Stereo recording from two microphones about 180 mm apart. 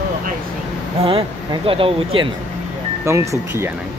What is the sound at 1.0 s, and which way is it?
Speech, 30° right (ahead or behind).